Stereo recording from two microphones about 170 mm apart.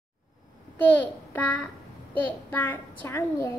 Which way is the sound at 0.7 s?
10° left (ahead or behind).